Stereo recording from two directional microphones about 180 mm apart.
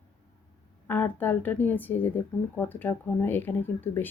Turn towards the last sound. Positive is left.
turn(degrees=10)  # may be behind; listen again after turning